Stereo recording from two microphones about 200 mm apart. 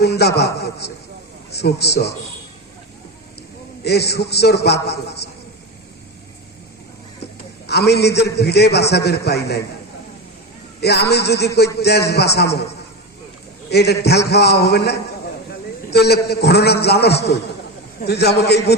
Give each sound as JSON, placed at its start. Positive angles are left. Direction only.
{"t": 0.0, "sound": "a man's voice", "side_deg": 55}
{"t": 3.8, "sound": "a man's voice", "side_deg": 55}
{"t": 7.7, "sound": "a man's voice", "side_deg": 55}
{"t": 10.8, "sound": "a man's voice", "side_deg": 55}
{"t": 13.7, "sound": "a man's voice", "side_deg": 55}